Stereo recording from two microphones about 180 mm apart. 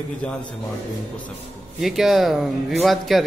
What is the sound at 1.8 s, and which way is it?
A man's voice, centre (ahead or behind).